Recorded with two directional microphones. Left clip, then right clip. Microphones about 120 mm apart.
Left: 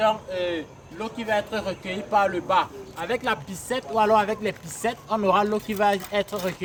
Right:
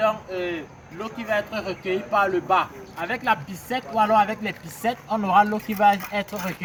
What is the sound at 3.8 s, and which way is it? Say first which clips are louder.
A man's voice: right 1 dB; 45° left (ahead or behind).